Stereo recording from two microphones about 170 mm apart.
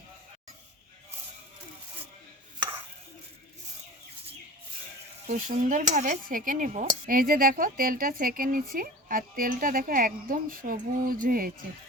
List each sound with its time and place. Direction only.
5.3 s speech: 45° right (ahead or behind)